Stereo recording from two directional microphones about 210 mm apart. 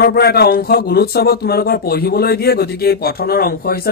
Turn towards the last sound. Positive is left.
turn(degrees=45)  # may be behind; listen again after turning